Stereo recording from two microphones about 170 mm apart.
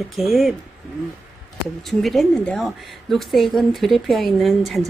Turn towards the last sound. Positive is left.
turn(degrees=0)  # may be behind; listen again after turning